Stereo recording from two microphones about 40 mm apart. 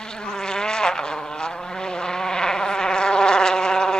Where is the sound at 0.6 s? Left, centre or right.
Centre.